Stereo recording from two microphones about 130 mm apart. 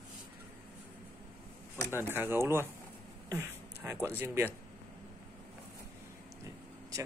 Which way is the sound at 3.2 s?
20° right (ahead or behind).